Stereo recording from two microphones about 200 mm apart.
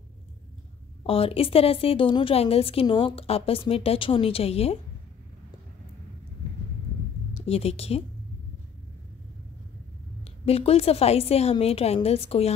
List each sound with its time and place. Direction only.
1.0 s a woman's voice: 30° left (ahead or behind)
7.3 s a woman's voice: 30° left (ahead or behind)
10.2 s a woman's voice: 30° left (ahead or behind)